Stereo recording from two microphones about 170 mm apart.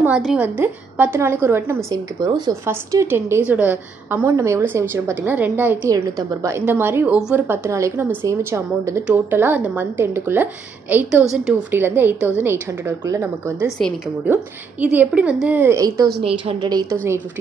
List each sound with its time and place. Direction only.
0.2 s a woman's voice: 5° right (ahead or behind)
16.2 s a woman's voice: 35° right (ahead or behind)
16.7 s a woman's voice: 15° right (ahead or behind)